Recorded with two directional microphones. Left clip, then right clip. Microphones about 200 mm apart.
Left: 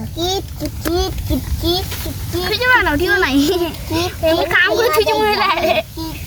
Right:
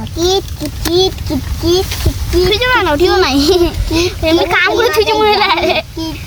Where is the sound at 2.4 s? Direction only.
Centre (ahead or behind).